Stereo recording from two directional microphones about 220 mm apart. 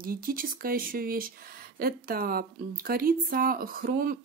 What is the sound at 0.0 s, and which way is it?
Speech, 40° right (ahead or behind).